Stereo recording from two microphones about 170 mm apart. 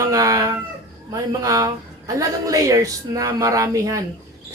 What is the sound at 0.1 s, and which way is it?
Chicken, 20° right (ahead or behind).